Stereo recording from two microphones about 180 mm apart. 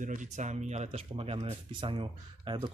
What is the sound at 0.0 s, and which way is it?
Speech, 45° right (ahead or behind).